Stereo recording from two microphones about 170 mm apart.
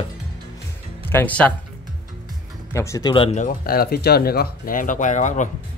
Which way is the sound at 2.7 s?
15° left (ahead or behind).